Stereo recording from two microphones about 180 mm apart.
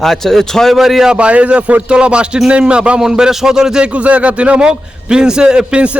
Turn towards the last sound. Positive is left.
turn(degrees=-5)  # may be behind; listen again after turning